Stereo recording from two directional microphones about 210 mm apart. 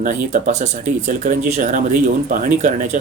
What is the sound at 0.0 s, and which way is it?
Speech, 35° right (ahead or behind).